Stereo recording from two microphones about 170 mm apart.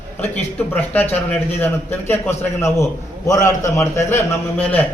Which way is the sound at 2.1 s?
15° left (ahead or behind).